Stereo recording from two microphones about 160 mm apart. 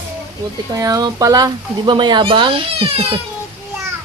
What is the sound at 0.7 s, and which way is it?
Speech, 20° right (ahead or behind).